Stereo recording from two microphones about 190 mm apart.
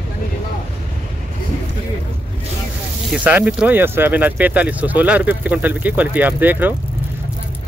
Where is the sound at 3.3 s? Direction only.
5° right (ahead or behind).